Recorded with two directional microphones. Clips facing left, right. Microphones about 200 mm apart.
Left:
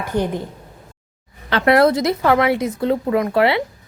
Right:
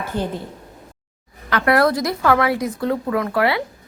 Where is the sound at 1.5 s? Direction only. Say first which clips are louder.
Left 3 dB; 25° left (ahead or behind).